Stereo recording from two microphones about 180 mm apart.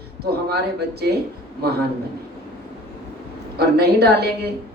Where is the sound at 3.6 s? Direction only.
60° right (ahead or behind).